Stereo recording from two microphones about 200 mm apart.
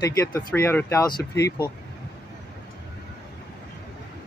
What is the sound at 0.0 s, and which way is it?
Speech, 15° left (ahead or behind).